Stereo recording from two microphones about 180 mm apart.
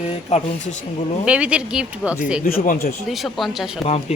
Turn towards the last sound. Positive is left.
turn(degrees=0)  # may be behind; listen again after turning